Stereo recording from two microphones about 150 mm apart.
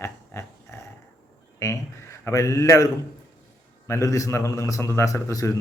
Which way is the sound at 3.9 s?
20° left (ahead or behind).